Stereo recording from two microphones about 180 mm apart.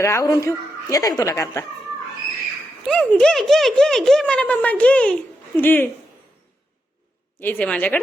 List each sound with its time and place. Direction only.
0.0 s a woman's voice: 15° left (ahead or behind)
2.8 s a woman's voice: 5° left (ahead or behind)
7.3 s a woman's voice: 10° left (ahead or behind)